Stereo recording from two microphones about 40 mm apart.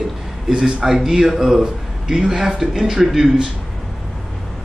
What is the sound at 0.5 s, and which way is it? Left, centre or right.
Speech, right.